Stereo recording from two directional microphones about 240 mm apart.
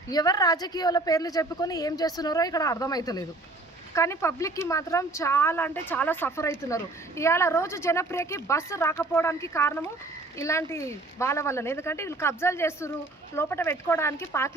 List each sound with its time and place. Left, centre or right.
0.1 s speech: centre